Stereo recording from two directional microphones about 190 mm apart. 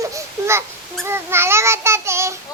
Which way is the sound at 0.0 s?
15° right (ahead or behind).